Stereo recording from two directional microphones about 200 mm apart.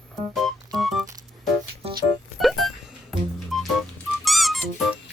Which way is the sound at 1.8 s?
30° right (ahead or behind).